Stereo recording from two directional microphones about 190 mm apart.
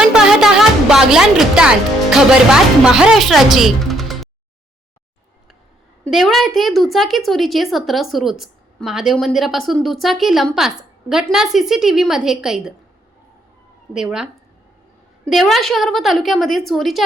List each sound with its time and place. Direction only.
0.0 s speech: 5° right (ahead or behind)
6.1 s a woman's voice: centre (ahead or behind)
13.9 s a woman's voice: 5° right (ahead or behind)